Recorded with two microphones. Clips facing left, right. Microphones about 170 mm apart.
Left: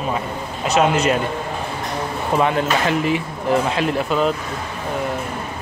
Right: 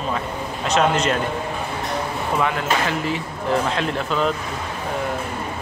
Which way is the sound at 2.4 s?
25° left (ahead or behind).